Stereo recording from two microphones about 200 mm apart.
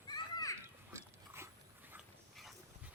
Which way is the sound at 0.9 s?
15° right (ahead or behind).